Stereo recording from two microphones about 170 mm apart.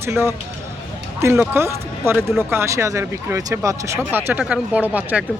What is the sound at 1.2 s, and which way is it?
Speech, 15° right (ahead or behind).